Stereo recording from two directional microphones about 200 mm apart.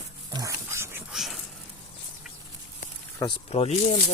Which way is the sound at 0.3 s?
15° right (ahead or behind).